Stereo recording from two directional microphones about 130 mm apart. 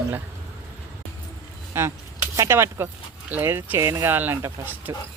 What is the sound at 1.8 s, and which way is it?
Speech, 20° right (ahead or behind).